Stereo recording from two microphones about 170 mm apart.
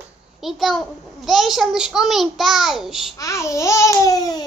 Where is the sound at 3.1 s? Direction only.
20° left (ahead or behind).